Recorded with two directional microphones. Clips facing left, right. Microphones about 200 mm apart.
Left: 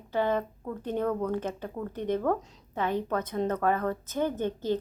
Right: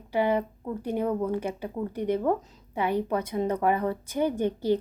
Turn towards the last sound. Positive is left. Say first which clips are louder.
# right 4 dB
turn(degrees=-10)  # may be behind; listen again after turning